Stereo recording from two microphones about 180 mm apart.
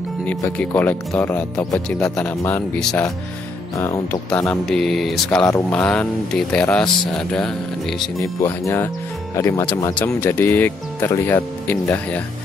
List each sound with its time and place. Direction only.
0.3 s speech: 10° left (ahead or behind)
3.7 s speech: 15° left (ahead or behind)
8.2 s speech: 15° left (ahead or behind)